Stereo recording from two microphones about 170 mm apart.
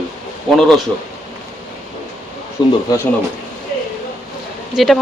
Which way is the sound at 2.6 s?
25° left (ahead or behind).